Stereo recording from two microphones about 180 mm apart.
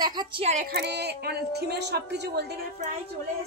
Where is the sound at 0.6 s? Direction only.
65° right (ahead or behind).